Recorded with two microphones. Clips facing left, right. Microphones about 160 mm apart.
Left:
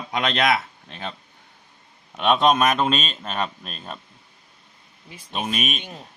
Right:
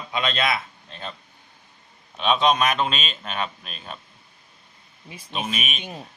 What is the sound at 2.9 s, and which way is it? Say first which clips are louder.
Speech: left 5 dB; 40° left (ahead or behind).